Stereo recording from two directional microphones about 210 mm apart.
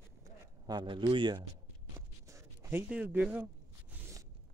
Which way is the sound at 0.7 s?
20° right (ahead or behind).